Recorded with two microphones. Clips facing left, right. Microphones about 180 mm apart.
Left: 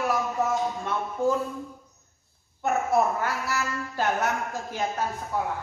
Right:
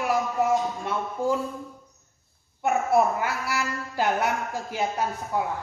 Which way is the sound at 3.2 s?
10° right (ahead or behind).